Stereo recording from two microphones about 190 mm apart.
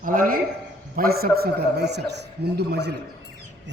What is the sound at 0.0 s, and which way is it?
A man's voice, 45° right (ahead or behind).